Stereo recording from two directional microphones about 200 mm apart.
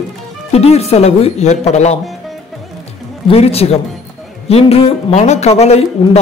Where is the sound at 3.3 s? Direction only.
30° left (ahead or behind).